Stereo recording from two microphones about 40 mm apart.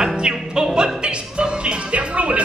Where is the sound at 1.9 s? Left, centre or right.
Right.